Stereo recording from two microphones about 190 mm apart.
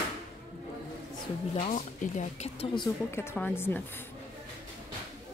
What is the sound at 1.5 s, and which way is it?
Speech, 40° left (ahead or behind).